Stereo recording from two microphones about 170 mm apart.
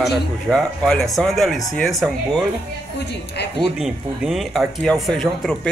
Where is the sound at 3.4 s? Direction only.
75° left (ahead or behind).